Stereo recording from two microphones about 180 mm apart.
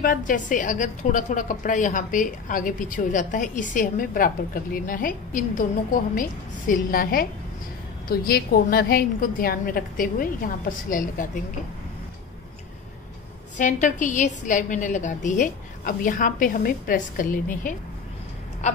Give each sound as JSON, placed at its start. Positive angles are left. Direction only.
{"t": 0.0, "sound": "a woman's voice", "side_deg": 50}
{"t": 13.6, "sound": "a woman's voice", "side_deg": 45}